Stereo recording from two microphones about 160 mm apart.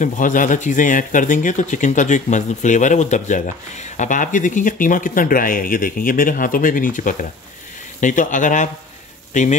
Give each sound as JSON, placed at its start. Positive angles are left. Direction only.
{"t": 0.0, "sound": "speech", "side_deg": 55}